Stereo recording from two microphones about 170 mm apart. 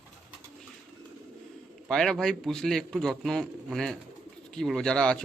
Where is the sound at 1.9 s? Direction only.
5° left (ahead or behind).